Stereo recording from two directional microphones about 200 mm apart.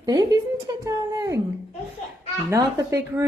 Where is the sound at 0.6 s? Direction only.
20° right (ahead or behind).